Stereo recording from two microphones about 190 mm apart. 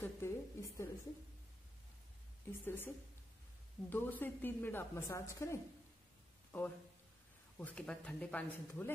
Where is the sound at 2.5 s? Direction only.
10° left (ahead or behind).